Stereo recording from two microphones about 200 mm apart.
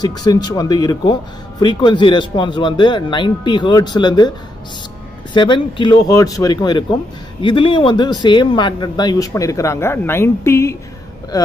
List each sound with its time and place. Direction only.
0.0 s speech: 20° left (ahead or behind)
5.3 s speech: 25° left (ahead or behind)